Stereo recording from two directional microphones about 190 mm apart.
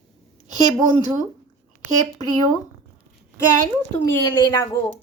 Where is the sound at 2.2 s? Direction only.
20° left (ahead or behind).